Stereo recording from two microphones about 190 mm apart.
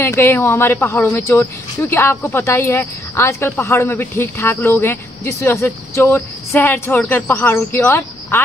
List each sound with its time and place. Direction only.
0.0 s speech: 15° left (ahead or behind)